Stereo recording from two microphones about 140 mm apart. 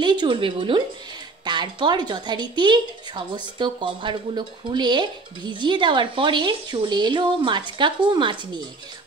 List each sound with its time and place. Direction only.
0.0 s a woman's voice: 35° right (ahead or behind)